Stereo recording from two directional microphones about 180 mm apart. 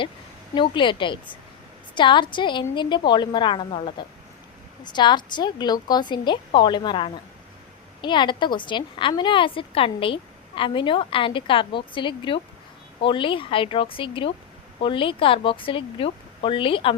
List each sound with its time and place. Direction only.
0.5 s a woman's voice: 25° left (ahead or behind)